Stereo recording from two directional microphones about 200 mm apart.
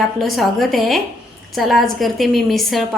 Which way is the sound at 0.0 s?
Centre (ahead or behind).